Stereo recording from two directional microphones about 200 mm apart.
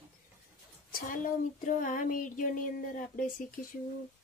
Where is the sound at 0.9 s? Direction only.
40° left (ahead or behind).